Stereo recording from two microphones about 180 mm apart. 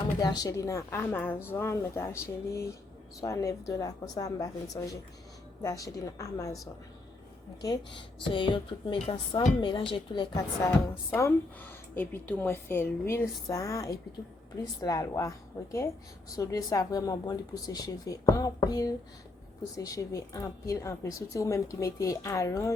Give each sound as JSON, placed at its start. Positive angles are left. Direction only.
{"t": 0.2, "sound": "a woman's voice", "side_deg": 20}
{"t": 7.9, "sound": "speech", "side_deg": 30}
{"t": 11.1, "sound": "a woman's voice", "side_deg": 10}